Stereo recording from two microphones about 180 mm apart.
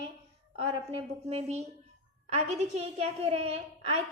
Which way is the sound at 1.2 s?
35° right (ahead or behind).